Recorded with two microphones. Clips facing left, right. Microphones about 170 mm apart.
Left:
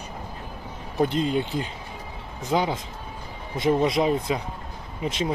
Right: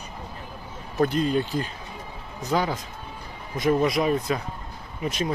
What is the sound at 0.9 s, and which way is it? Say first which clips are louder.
Speech: right 1 dB; 20° left (ahead or behind).